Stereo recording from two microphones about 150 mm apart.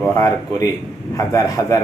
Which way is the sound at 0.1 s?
20° left (ahead or behind).